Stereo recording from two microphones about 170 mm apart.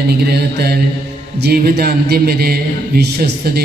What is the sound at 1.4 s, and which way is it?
A man's voice, 65° right (ahead or behind).